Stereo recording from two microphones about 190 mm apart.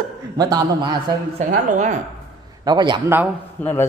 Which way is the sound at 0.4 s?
20° right (ahead or behind).